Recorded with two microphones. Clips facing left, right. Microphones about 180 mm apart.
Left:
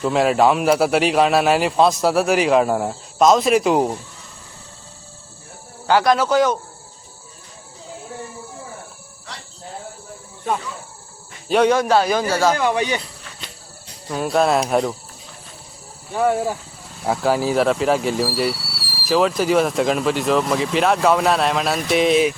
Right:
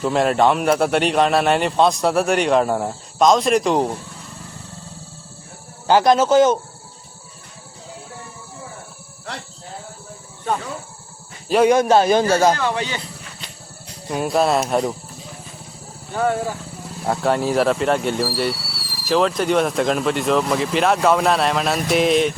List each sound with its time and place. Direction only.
0.0 s speech: centre (ahead or behind)
5.9 s speech: 20° right (ahead or behind)
11.4 s speech: centre (ahead or behind)
11.7 s speech: 20° right (ahead or behind)
12.5 s speech: 15° left (ahead or behind)
14.1 s speech: 5° right (ahead or behind)
17.1 s speech: centre (ahead or behind)